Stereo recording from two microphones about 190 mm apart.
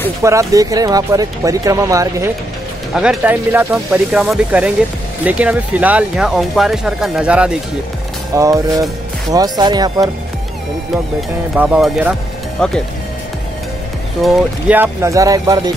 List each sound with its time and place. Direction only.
0.2 s speech: 15° right (ahead or behind)
2.9 s speech: 5° right (ahead or behind)
8.4 s speech: 15° right (ahead or behind)
11.5 s speech: 5° right (ahead or behind)
14.2 s speech: 5° right (ahead or behind)